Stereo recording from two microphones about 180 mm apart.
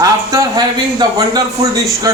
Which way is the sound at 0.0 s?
20° right (ahead or behind).